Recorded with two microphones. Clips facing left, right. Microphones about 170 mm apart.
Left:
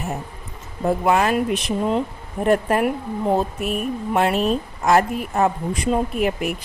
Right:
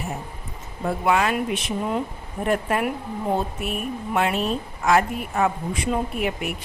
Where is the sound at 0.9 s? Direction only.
40° left (ahead or behind).